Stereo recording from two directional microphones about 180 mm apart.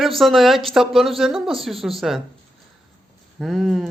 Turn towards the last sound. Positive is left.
turn(degrees=0)  # may be behind; listen again after turning